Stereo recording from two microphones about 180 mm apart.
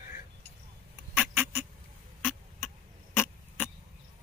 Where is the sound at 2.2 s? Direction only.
5° right (ahead or behind).